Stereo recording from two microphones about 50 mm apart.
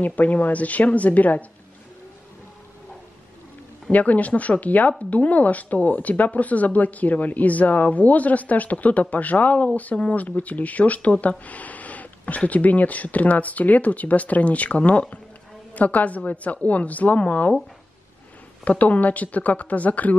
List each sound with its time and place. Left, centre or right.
0.0 s speech: left
3.9 s speech: left
18.6 s speech: left